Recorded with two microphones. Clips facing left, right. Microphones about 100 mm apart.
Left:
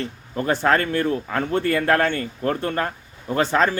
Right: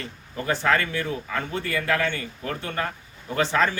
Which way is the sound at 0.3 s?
45° left (ahead or behind).